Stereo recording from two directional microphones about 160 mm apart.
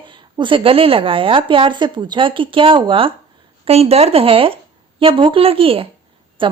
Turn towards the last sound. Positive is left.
turn(degrees=-30)  # may be behind; listen again after turning